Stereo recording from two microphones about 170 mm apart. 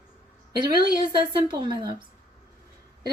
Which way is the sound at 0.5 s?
25° right (ahead or behind).